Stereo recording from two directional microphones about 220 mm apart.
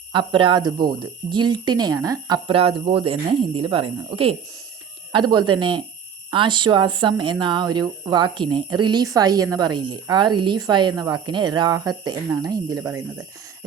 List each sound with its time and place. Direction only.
0.1 s speech: 20° right (ahead or behind)